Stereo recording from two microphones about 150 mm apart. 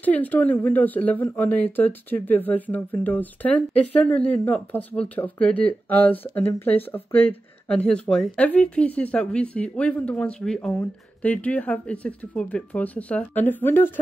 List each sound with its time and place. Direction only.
0.0 s a woman's voice: 10° left (ahead or behind)